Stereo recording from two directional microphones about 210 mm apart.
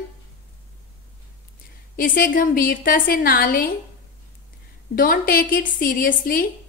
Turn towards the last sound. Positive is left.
turn(degrees=45)  # may be behind; listen again after turning